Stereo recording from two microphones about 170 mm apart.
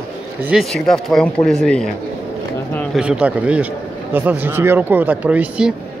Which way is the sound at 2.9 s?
5° right (ahead or behind).